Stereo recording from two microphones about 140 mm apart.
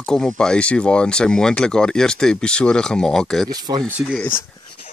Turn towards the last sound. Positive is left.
turn(degrees=10)  # may be behind; listen again after turning